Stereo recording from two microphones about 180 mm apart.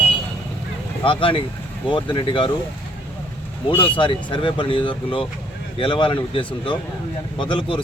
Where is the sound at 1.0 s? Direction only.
30° left (ahead or behind).